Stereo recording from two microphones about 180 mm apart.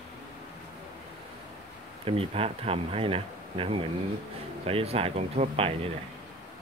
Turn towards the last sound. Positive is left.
turn(degrees=-35)  # may be behind; listen again after turning